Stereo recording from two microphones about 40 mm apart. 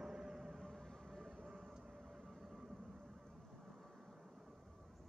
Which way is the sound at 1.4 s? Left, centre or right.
Centre.